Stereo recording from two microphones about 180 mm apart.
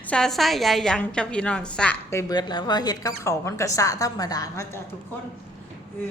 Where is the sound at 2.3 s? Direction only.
25° left (ahead or behind).